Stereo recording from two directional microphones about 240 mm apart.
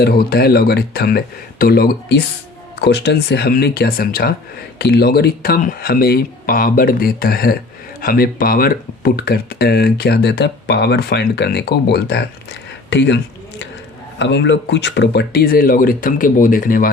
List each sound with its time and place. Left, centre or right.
0.0 s speech: left
14.2 s speech: left